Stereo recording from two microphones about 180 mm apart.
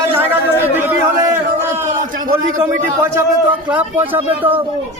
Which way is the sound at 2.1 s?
50° right (ahead or behind).